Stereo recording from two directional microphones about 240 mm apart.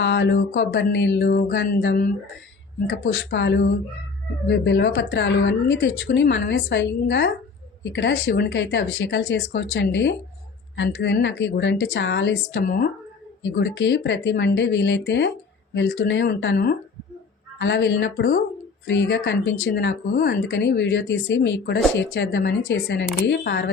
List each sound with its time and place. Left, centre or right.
0.0 s speech: left